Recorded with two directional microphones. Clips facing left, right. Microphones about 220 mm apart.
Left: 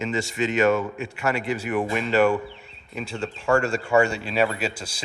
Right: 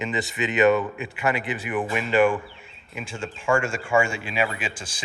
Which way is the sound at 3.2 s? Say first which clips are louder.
Left 2 dB; 35° left (ahead or behind).